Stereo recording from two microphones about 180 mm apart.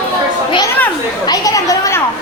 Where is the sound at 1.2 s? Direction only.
20° left (ahead or behind).